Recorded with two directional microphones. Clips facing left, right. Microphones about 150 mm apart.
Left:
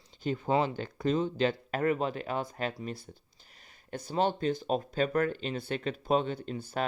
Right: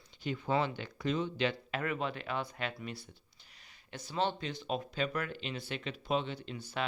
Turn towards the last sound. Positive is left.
turn(degrees=45)  # may be behind; listen again after turning